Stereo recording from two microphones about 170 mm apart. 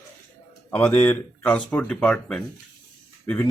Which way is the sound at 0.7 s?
10° left (ahead or behind).